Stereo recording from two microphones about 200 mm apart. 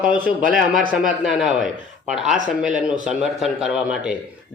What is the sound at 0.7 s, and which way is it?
Speech, 40° right (ahead or behind).